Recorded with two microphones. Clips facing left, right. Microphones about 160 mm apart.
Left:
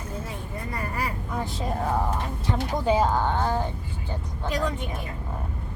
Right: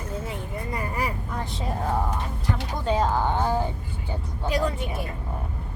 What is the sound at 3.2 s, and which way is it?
A woman's voice, 10° right (ahead or behind).